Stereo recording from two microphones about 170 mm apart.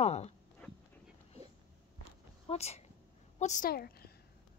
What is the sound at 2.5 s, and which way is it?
A woman's voice, 40° left (ahead or behind).